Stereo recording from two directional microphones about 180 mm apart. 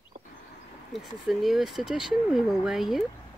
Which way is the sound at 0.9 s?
Centre (ahead or behind).